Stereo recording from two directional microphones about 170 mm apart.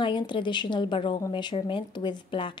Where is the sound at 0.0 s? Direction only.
30° left (ahead or behind).